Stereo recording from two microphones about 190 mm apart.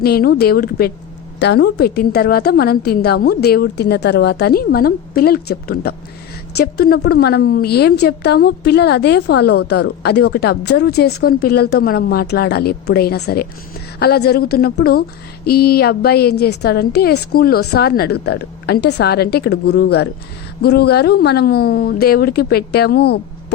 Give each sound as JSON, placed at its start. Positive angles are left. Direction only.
{"t": 0.0, "sound": "a woman's voice", "side_deg": 55}